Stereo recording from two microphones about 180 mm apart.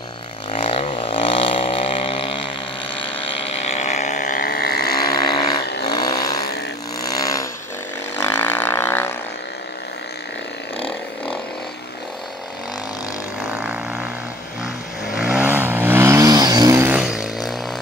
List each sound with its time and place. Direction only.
0.5 s vehicle: 35° left (ahead or behind); by 4.9 s 60° left (ahead or behind)
5.1 s vehicle: 20° left (ahead or behind)
7.2 s a sound: 20° left (ahead or behind)
8.2 s vehicle: 10° left (ahead or behind)
13.5 s vehicle: 5° right (ahead or behind)
15.1 s vehicle: 10° right (ahead or behind)
17.0 s a sound: centre (ahead or behind)